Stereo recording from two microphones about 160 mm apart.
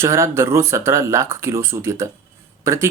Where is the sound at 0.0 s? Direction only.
15° right (ahead or behind).